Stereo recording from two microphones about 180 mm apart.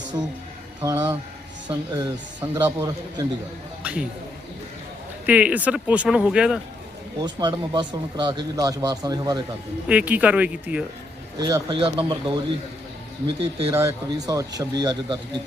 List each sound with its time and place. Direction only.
0.8 s speech: 20° right (ahead or behind)
3.8 s a sound: 10° right (ahead or behind)
5.2 s speech: 10° right (ahead or behind)
7.2 s speech: 25° right (ahead or behind)
9.9 s speech: 10° right (ahead or behind)
11.3 s speech: 25° right (ahead or behind)
13.7 s speech: 20° right (ahead or behind)